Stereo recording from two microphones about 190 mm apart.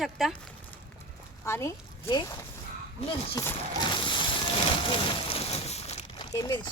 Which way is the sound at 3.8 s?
25° left (ahead or behind).